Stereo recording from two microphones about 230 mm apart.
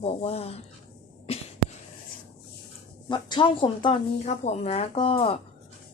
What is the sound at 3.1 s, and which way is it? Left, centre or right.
Speech, left.